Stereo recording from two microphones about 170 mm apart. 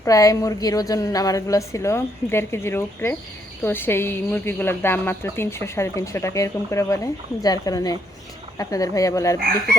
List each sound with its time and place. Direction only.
0.0 s a woman's voice: 20° left (ahead or behind)